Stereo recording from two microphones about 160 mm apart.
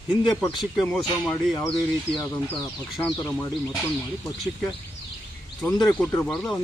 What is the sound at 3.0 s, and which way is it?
Speech, 10° left (ahead or behind).